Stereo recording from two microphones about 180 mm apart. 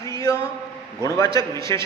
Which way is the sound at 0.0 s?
20° left (ahead or behind).